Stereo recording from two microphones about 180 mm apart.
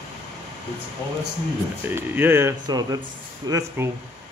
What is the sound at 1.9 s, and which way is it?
Speech, 15° right (ahead or behind).